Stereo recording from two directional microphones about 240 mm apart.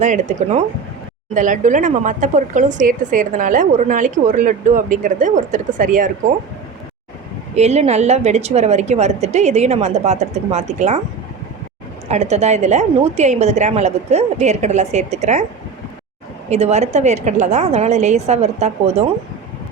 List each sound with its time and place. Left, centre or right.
0.0 s speech: right
7.5 s a woman's voice: right
12.0 s a woman's voice: right
16.5 s a woman's voice: right